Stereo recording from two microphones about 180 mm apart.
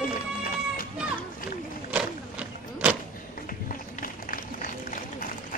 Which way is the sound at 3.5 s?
50° left (ahead or behind).